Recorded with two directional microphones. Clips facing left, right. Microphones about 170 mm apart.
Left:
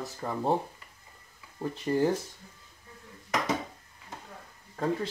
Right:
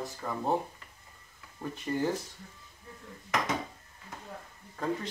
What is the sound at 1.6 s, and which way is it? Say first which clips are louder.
Speech: left 5 dB; 30° left (ahead or behind).